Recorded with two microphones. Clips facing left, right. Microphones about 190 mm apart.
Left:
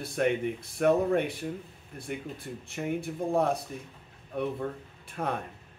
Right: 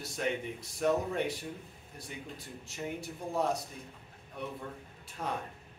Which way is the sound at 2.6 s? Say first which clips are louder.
Left 7 dB; 55° left (ahead or behind).